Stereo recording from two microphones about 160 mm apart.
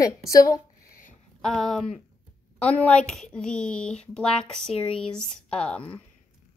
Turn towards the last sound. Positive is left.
turn(degrees=5)  # may be behind; listen again after turning